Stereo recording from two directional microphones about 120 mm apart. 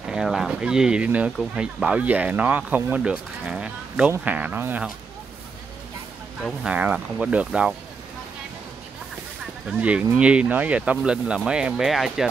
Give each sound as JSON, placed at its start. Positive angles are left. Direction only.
{"t": 0.0, "sound": "speech", "side_deg": -5}
{"t": 6.4, "sound": "speech", "side_deg": -10}
{"t": 9.7, "sound": "speech", "side_deg": -10}